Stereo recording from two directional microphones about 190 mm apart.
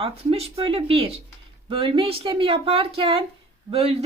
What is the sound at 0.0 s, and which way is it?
Speech, 30° right (ahead or behind).